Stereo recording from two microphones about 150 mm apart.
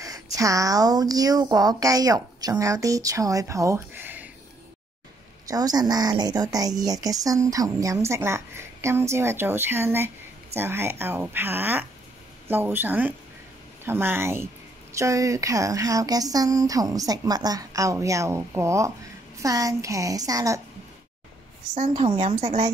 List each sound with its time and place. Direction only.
0.0 s speech: 25° right (ahead or behind)
5.5 s a woman's voice: 25° right (ahead or behind)
21.7 s a woman's voice: 60° right (ahead or behind)